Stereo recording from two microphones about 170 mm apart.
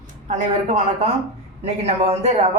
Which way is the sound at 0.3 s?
45° right (ahead or behind).